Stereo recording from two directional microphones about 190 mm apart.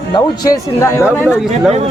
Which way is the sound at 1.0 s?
5° right (ahead or behind).